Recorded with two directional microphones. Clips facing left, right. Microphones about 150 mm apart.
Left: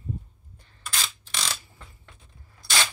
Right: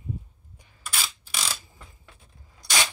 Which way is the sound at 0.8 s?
5° right (ahead or behind).